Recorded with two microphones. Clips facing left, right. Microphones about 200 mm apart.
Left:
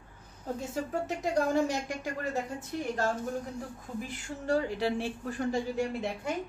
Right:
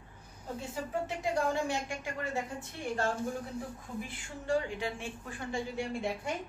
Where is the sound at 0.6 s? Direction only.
40° left (ahead or behind).